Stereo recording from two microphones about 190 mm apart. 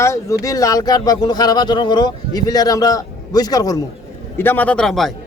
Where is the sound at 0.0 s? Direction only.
15° left (ahead or behind).